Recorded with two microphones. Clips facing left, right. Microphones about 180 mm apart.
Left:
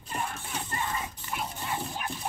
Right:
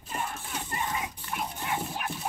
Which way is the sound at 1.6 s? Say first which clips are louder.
Right 1 dB; 10° right (ahead or behind).